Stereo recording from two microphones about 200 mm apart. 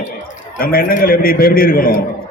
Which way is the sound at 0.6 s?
45° left (ahead or behind).